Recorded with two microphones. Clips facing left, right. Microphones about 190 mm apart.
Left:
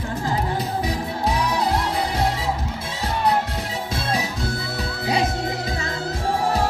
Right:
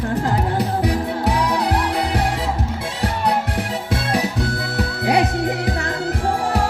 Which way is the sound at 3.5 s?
65° right (ahead or behind).